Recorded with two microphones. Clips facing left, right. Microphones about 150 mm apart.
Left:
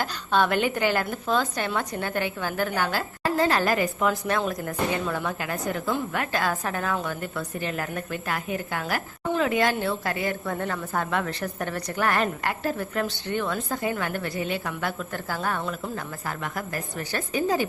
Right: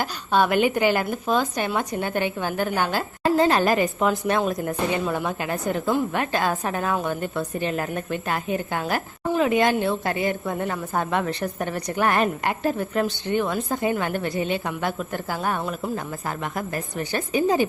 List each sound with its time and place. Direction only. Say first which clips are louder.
0.0 s a woman's voice: right 2 dB; 10° right (ahead or behind)